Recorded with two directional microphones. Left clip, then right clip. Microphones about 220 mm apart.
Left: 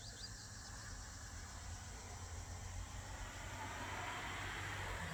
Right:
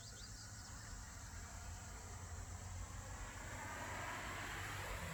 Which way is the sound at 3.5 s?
35° right (ahead or behind).